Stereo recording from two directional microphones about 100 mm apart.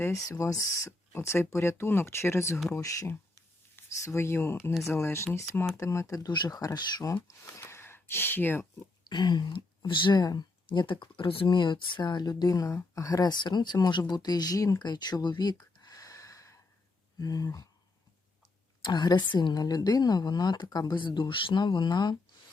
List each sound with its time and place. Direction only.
0.0 s speech: 30° left (ahead or behind)
9.0 s a woman's voice: 50° left (ahead or behind)
18.8 s a woman's voice: 45° left (ahead or behind)